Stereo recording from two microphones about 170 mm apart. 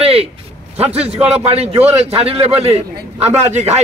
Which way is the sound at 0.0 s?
35° right (ahead or behind).